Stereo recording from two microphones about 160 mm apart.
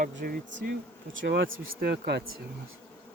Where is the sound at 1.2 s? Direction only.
90° right.